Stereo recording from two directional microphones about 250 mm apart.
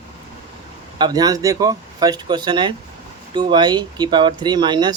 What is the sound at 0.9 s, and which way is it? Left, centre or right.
Speech, centre.